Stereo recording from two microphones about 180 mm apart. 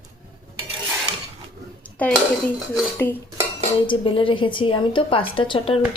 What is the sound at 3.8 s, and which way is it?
A woman's voice, 30° left (ahead or behind).